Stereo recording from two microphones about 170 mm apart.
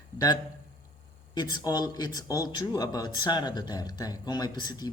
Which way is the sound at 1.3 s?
25° left (ahead or behind).